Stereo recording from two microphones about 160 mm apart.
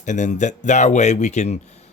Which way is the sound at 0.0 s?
50° left (ahead or behind).